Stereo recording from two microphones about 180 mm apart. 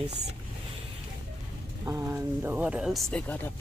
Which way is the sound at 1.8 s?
15° right (ahead or behind).